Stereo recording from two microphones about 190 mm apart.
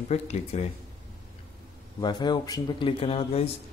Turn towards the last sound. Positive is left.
turn(degrees=30)  # may be behind; listen again after turning